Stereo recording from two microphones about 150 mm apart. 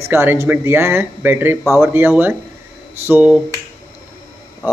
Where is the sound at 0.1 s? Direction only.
15° right (ahead or behind).